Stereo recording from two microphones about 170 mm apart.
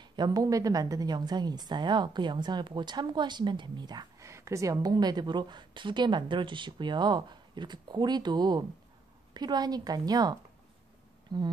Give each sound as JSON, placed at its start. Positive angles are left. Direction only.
{"t": 0.0, "sound": "a woman's voice", "side_deg": -25}